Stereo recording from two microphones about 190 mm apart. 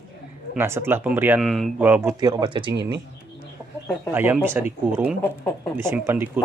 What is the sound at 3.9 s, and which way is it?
Speech, 10° right (ahead or behind).